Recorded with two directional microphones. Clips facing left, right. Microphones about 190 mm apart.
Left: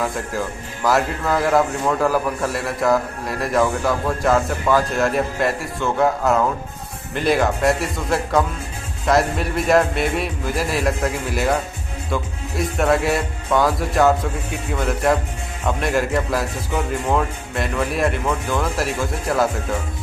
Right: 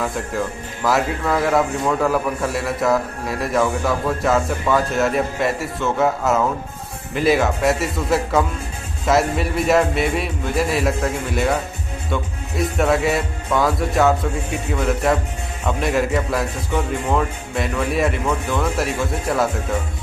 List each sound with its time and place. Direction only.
0.0 s speech: centre (ahead or behind)